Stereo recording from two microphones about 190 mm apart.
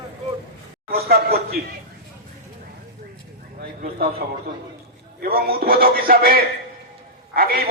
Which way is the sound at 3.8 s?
55° right (ahead or behind).